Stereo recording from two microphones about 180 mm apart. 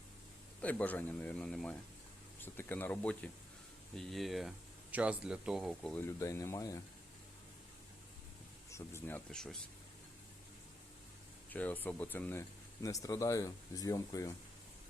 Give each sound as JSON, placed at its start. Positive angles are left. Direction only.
{"t": 0.6, "sound": "speech", "side_deg": 10}
{"t": 8.7, "sound": "speech", "side_deg": 15}
{"t": 11.5, "sound": "speech", "side_deg": 10}